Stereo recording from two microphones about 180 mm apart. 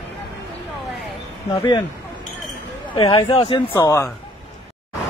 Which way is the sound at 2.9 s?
30° left (ahead or behind).